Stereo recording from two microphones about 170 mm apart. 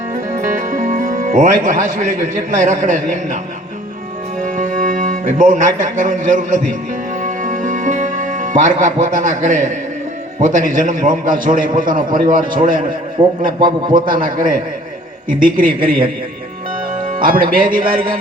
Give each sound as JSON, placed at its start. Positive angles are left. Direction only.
{"t": 0.3, "sound": "speech", "side_deg": -50}
{"t": 4.4, "sound": "speech", "side_deg": -50}
{"t": 7.2, "sound": "music", "side_deg": -50}
{"t": 10.4, "sound": "a man's voice", "side_deg": -50}
{"t": 13.2, "sound": "a man's voice", "side_deg": -30}
{"t": 13.9, "sound": "speech", "side_deg": -55}
{"t": 17.2, "sound": "speech", "side_deg": -55}